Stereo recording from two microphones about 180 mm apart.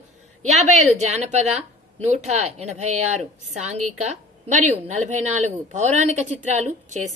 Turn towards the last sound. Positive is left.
turn(degrees=-40)  # may be behind; listen again after turning